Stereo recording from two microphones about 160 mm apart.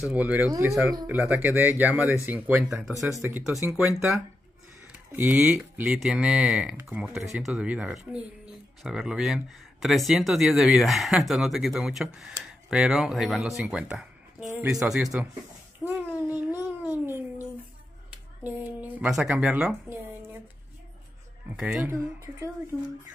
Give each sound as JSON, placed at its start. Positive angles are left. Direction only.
{"t": 0.0, "sound": "speech", "side_deg": -10}
{"t": 3.3, "sound": "speech", "side_deg": -15}
{"t": 3.8, "sound": "speech", "side_deg": 0}
{"t": 15.8, "sound": "babbling", "side_deg": -15}
{"t": 18.4, "sound": "a woman's voice", "side_deg": -10}
{"t": 21.5, "sound": "speech", "side_deg": -5}